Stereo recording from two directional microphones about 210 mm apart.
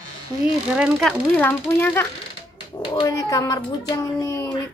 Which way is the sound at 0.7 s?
5° right (ahead or behind).